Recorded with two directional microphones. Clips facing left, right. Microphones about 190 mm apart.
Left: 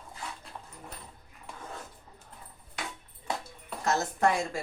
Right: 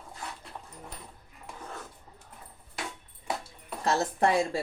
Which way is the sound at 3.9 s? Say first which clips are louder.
Right 1 dB; 30° right (ahead or behind).